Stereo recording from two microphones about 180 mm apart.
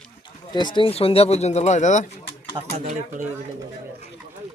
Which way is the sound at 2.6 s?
40° right (ahead or behind).